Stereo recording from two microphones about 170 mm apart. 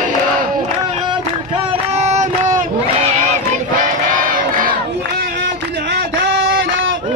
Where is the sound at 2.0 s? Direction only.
40° right (ahead or behind).